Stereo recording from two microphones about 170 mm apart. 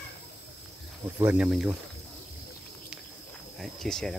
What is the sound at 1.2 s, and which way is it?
Speech, 5° right (ahead or behind).